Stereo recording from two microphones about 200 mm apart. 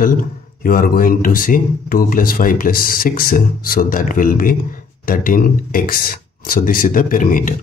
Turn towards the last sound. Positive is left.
turn(degrees=40)  # may be behind; listen again after turning